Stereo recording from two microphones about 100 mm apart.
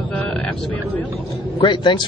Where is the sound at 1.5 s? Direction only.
55° left (ahead or behind).